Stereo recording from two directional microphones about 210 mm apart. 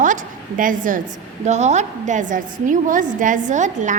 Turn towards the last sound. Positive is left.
turn(degrees=-35)  # may be behind; listen again after turning